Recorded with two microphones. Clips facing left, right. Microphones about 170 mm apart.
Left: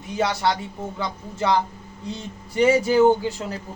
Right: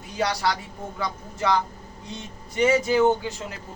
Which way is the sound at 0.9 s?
25° left (ahead or behind).